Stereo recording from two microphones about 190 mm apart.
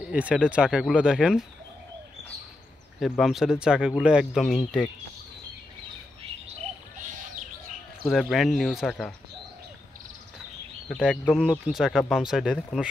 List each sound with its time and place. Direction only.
0.1 s speech: 5° right (ahead or behind)
3.0 s speech: centre (ahead or behind)
8.1 s speech: centre (ahead or behind)
10.9 s speech: centre (ahead or behind)